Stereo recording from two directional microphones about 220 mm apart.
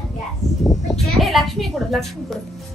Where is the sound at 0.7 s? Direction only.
Centre (ahead or behind).